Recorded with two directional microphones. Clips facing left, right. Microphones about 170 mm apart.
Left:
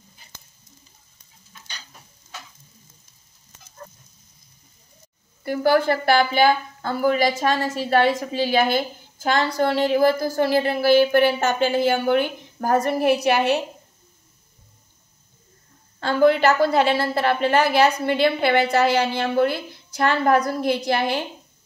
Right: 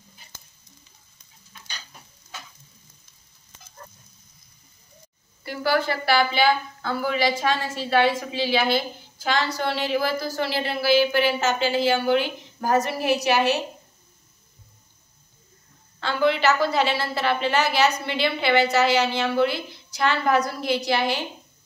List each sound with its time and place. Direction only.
5.4 s a woman's voice: 50° left (ahead or behind)
16.0 s a woman's voice: 50° left (ahead or behind)